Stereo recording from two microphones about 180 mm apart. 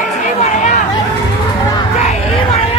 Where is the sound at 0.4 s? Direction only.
40° left (ahead or behind).